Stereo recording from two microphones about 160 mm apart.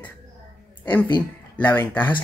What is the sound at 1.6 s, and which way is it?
Speech, 10° left (ahead or behind).